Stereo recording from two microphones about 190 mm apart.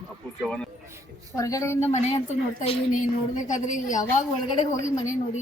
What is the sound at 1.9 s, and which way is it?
A woman's voice, 35° left (ahead or behind).